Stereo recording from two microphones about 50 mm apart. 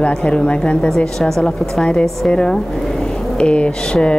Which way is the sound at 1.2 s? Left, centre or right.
Centre.